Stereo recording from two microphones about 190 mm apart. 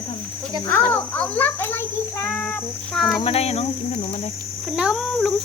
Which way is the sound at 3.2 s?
30° left (ahead or behind).